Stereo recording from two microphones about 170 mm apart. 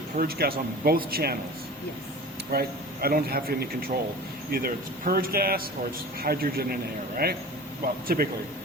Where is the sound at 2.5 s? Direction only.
65° right (ahead or behind).